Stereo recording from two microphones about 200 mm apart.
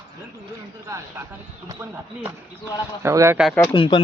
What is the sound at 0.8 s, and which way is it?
Speech, 15° right (ahead or behind).